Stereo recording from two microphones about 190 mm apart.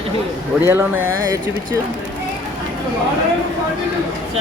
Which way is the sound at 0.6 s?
10° right (ahead or behind).